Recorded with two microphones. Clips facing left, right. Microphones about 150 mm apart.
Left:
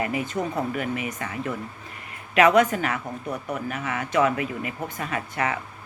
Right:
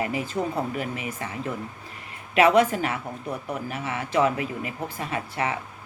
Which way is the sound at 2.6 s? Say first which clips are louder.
Even; 30° right (ahead or behind).